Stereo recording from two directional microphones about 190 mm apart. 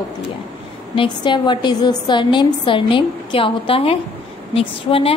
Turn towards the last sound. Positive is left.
turn(degrees=30)  # may be behind; listen again after turning